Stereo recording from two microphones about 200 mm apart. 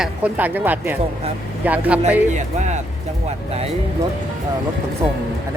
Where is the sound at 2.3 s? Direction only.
35° right (ahead or behind).